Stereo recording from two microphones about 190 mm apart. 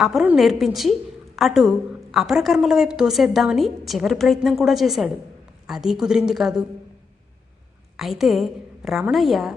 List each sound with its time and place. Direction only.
0.0 s a woman's voice: 5° right (ahead or behind)
7.9 s a woman's voice: centre (ahead or behind)